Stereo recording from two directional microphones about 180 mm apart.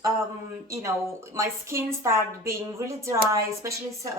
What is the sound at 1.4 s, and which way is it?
Speech, 15° right (ahead or behind).